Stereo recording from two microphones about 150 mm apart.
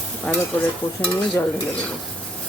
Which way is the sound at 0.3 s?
5° left (ahead or behind).